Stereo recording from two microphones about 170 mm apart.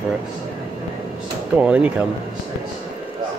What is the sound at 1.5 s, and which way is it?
Speech, 5° right (ahead or behind).